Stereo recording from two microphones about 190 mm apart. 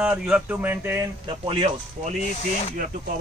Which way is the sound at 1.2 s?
25° right (ahead or behind).